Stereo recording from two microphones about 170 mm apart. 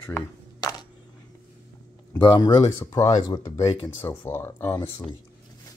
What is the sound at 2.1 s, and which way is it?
Speech, 20° left (ahead or behind).